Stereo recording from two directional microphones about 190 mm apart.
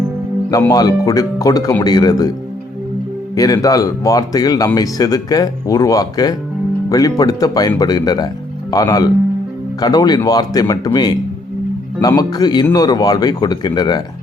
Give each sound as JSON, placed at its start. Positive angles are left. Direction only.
{"t": 0.7, "sound": "speech", "side_deg": 20}
{"t": 3.3, "sound": "speech", "side_deg": 20}